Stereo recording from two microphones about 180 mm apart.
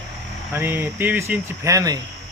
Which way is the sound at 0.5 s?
10° right (ahead or behind).